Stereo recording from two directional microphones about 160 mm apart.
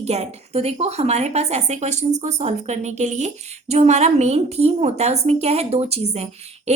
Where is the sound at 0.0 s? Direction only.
40° right (ahead or behind).